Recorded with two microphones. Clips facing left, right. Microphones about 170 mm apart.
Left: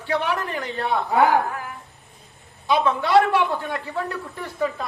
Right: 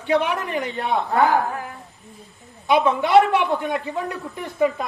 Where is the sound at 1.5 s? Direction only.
30° right (ahead or behind).